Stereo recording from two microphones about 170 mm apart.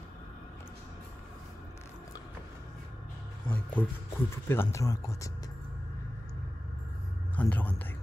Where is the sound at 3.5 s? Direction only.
10° left (ahead or behind).